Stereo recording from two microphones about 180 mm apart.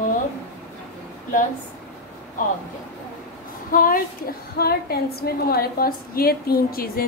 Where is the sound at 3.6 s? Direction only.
50° left (ahead or behind).